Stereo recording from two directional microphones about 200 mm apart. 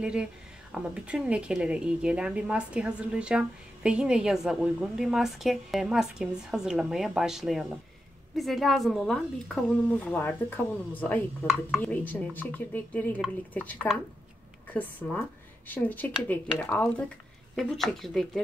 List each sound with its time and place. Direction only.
0.0 s a woman's voice: 5° right (ahead or behind)